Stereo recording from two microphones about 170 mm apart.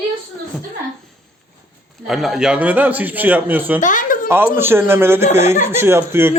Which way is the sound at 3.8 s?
50° left (ahead or behind).